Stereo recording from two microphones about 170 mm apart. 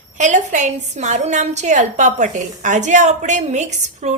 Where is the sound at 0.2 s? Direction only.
45° right (ahead or behind).